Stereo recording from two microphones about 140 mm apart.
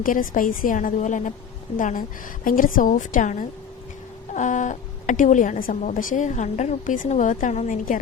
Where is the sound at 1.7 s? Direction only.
75° left (ahead or behind).